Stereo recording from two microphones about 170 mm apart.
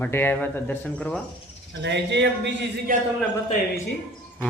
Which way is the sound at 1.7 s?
90° right.